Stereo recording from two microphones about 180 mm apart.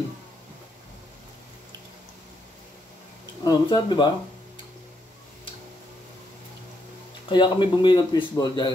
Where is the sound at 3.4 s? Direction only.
25° left (ahead or behind).